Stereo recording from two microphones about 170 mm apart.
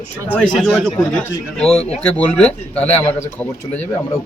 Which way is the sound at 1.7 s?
35° left (ahead or behind).